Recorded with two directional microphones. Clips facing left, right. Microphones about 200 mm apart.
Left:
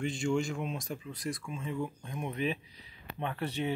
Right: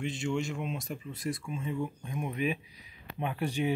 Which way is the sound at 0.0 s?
Centre (ahead or behind).